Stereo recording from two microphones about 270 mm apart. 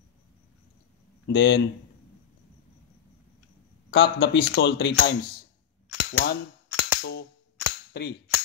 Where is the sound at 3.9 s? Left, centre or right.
Left.